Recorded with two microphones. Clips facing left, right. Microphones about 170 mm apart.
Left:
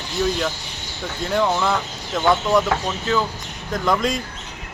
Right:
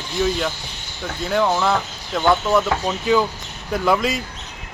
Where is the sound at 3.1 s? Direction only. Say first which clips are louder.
Right 4 dB; 15° right (ahead or behind).